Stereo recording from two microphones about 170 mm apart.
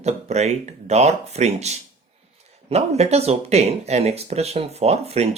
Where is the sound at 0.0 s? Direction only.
40° right (ahead or behind).